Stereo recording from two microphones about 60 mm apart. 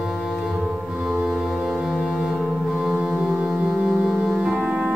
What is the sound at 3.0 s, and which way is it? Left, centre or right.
Music, centre.